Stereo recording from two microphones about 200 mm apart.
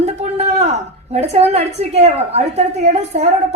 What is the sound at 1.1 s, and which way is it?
A woman's voice, 35° right (ahead or behind).